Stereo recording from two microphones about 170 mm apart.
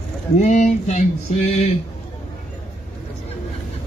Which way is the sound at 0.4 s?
45° left (ahead or behind).